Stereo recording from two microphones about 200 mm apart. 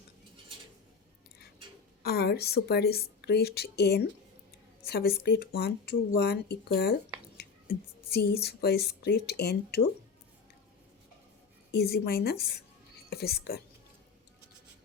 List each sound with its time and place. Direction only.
2.0 s a woman's voice: 50° left (ahead or behind)
11.7 s a woman's voice: 50° left (ahead or behind)